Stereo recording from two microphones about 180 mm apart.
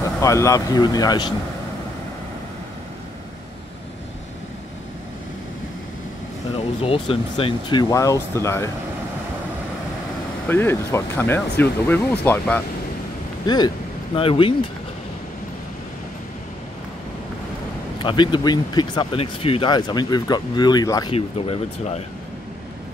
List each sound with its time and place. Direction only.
0.2 s speech: 15° left (ahead or behind)
6.8 s speech: 30° left (ahead or behind)
7.9 s speech: 20° left (ahead or behind)
10.5 s speech: 15° left (ahead or behind)
13.5 s speech: 20° left (ahead or behind)
17.9 s speech: 25° left (ahead or behind)
21.1 s speech: 35° left (ahead or behind)